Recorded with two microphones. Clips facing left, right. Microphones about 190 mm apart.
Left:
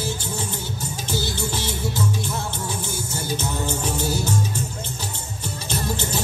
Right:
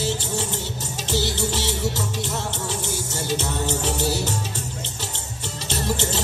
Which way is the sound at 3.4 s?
75° right (ahead or behind).